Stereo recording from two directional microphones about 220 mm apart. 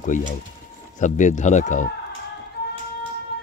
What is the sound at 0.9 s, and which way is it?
Speech, 35° left (ahead or behind).